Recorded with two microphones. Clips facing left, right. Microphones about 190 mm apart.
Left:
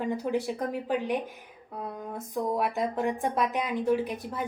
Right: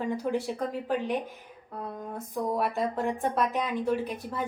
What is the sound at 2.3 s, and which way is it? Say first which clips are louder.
A woman's voice: even; 15° left (ahead or behind).